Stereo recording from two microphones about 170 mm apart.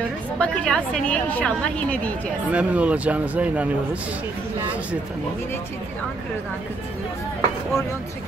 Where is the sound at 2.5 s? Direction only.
5° right (ahead or behind).